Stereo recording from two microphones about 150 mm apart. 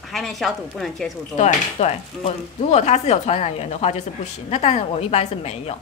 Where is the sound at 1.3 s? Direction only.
50° left (ahead or behind).